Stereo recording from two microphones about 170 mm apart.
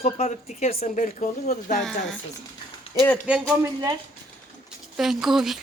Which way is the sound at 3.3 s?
10° right (ahead or behind).